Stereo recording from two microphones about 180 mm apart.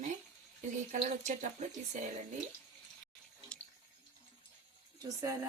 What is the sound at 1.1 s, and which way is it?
Speech, 40° right (ahead or behind).